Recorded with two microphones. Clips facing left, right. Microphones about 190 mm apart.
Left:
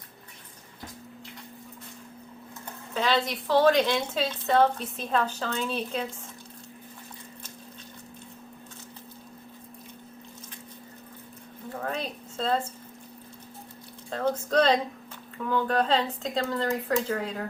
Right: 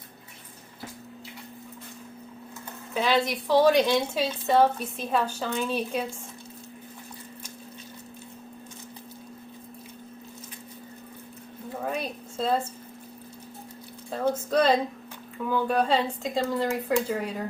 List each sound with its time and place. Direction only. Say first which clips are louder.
2.9 s a woman's voice: right 2 dB; 10° right (ahead or behind)
11.7 s a sound: right 1 dB; 10° right (ahead or behind)
14.1 s a woman's voice: right 1 dB; 10° right (ahead or behind)